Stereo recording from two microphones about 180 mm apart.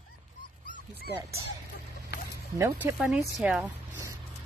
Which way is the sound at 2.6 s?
10° right (ahead or behind).